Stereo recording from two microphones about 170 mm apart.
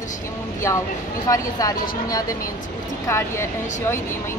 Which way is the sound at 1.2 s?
20° left (ahead or behind).